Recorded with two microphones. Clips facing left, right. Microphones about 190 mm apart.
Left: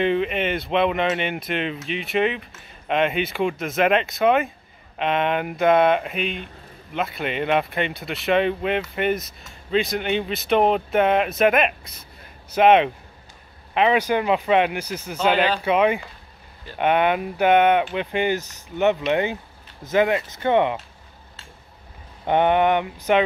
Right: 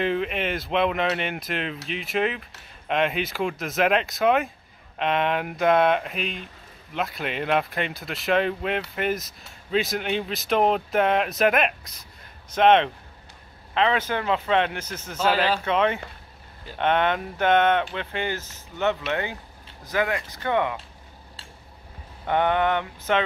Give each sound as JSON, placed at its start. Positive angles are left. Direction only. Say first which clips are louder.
{"t": 0.0, "sound": "speech", "louder": "left 4 dB", "side_deg": 0}
{"t": 22.2, "sound": "speech", "louder": "left 4 dB", "side_deg": 20}